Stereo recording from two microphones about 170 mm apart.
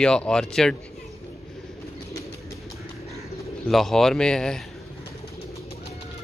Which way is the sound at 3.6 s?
Centre (ahead or behind).